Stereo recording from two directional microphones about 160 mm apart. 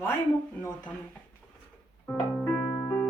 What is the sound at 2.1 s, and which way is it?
Music, 10° left (ahead or behind).